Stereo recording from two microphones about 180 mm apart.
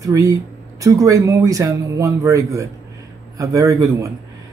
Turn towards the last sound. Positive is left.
turn(degrees=-15)  # may be behind; listen again after turning